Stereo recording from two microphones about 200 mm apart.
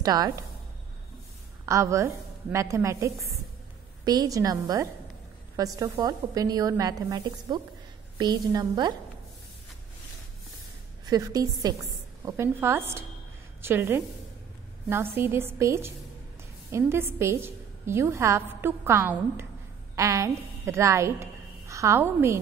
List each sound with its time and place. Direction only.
0.0 s a woman's voice: 20° right (ahead or behind)
1.7 s a woman's voice: 15° right (ahead or behind)
11.1 s a woman's voice: 20° right (ahead or behind)